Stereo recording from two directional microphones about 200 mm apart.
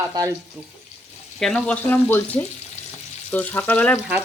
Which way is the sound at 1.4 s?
5° left (ahead or behind).